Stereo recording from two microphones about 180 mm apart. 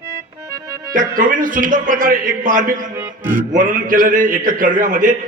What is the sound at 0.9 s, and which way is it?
Mantra, 50° right (ahead or behind).